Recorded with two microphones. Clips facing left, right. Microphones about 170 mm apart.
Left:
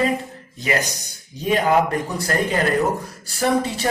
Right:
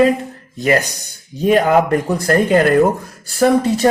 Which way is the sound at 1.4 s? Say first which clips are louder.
Right 5 dB; 55° right (ahead or behind).